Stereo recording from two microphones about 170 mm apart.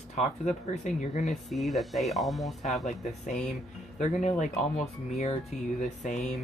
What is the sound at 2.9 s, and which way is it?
Speech, 45° left (ahead or behind).